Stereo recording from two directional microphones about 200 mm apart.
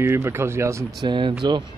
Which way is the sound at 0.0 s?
10° right (ahead or behind).